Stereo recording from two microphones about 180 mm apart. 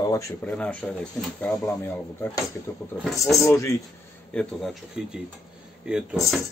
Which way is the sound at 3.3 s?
15° left (ahead or behind).